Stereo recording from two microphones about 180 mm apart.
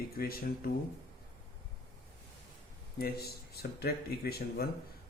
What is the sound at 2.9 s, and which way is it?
A man's voice, 60° left (ahead or behind).